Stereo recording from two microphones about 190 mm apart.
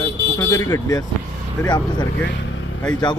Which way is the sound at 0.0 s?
15° left (ahead or behind).